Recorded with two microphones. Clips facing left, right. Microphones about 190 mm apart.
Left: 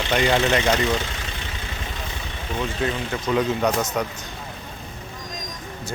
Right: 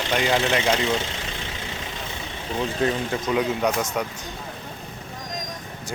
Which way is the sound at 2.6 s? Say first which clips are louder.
Right 2 dB; 30° right (ahead or behind).